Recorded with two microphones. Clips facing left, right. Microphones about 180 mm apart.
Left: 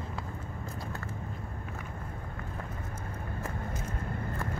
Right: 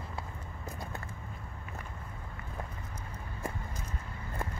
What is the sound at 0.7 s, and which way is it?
Vehicle, 15° right (ahead or behind).